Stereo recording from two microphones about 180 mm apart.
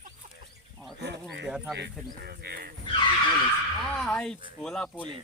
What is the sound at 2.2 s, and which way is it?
Speech, 60° right (ahead or behind).